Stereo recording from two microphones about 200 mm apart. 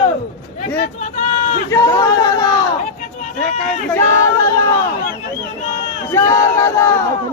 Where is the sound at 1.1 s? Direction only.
35° left (ahead or behind).